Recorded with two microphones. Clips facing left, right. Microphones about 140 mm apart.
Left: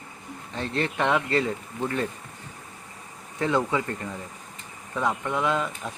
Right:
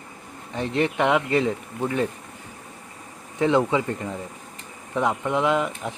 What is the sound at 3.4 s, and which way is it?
Speech, 20° right (ahead or behind).